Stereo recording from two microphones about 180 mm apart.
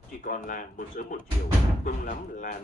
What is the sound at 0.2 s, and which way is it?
A man's voice, 45° left (ahead or behind).